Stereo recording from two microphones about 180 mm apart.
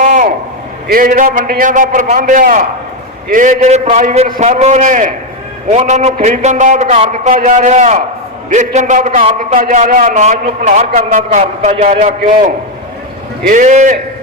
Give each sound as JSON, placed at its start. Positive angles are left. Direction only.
{"t": 0.0, "sound": "a sound", "side_deg": -45}
{"t": 0.9, "sound": "a man's voice", "side_deg": -50}
{"t": 13.5, "sound": "a man's voice", "side_deg": -45}